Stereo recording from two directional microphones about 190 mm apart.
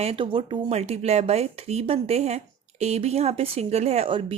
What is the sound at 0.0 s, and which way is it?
Speech, 30° right (ahead or behind).